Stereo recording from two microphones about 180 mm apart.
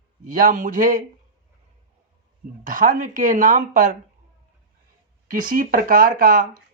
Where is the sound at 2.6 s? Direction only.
50° right (ahead or behind).